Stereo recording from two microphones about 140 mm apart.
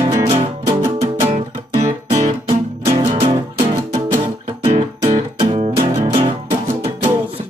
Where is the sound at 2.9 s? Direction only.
40° right (ahead or behind).